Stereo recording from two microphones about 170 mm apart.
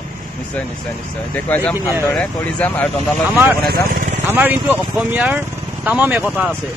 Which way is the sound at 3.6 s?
55° right (ahead or behind).